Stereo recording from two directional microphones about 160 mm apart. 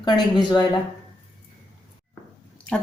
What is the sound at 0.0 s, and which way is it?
Speech, 25° left (ahead or behind).